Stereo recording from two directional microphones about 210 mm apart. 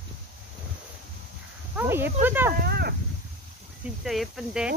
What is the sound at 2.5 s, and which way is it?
Speech, 50° right (ahead or behind).